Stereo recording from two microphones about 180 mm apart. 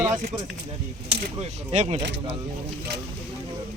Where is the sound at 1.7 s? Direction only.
35° right (ahead or behind).